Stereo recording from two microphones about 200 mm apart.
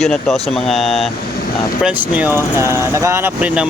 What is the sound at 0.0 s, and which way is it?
Speech, centre (ahead or behind).